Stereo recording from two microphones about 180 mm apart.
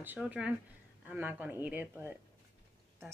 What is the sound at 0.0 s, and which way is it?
Speech, 10° right (ahead or behind).